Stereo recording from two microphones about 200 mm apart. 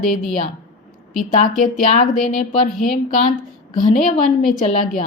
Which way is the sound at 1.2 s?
40° left (ahead or behind).